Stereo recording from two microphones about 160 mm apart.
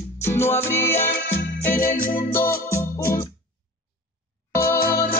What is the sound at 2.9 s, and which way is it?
Music, 20° left (ahead or behind).